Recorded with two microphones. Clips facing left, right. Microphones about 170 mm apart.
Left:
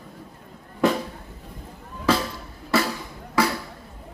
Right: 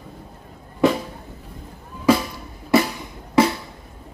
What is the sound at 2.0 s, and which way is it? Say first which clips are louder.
Drum: right 5 dB; 15° right (ahead or behind).